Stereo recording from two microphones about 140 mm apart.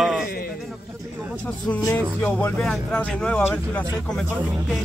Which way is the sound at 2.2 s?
10° left (ahead or behind).